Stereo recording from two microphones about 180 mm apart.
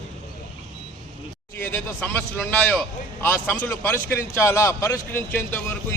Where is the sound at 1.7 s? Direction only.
10° left (ahead or behind).